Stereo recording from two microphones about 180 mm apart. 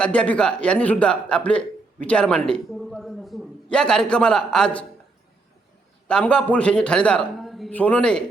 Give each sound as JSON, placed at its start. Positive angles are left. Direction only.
{"t": 0.0, "sound": "a man's voice", "side_deg": 5}
{"t": 6.1, "sound": "a man's voice", "side_deg": 5}